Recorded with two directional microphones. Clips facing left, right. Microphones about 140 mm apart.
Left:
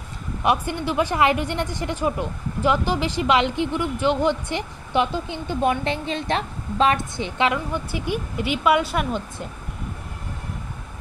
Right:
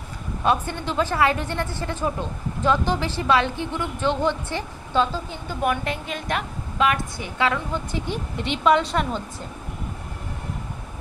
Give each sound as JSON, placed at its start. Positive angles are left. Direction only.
{"t": 0.4, "sound": "a woman's voice", "side_deg": 15}
{"t": 7.5, "sound": "a woman's voice", "side_deg": 10}